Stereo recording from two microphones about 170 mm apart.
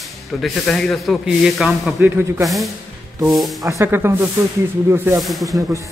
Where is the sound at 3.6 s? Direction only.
20° right (ahead or behind).